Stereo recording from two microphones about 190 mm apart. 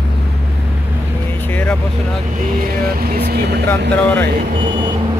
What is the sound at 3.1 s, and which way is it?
Vehicle, 60° right (ahead or behind).